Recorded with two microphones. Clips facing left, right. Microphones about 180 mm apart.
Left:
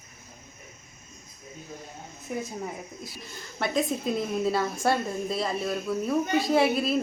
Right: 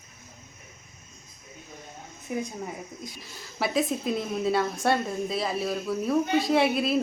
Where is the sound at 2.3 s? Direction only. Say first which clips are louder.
Right 2 dB; 5° right (ahead or behind).